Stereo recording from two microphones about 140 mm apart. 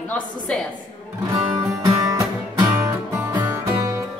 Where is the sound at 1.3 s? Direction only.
20° right (ahead or behind).